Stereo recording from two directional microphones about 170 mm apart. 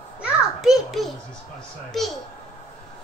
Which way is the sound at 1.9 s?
Centre (ahead or behind).